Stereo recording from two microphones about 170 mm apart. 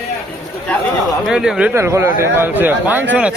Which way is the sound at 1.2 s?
5° right (ahead or behind).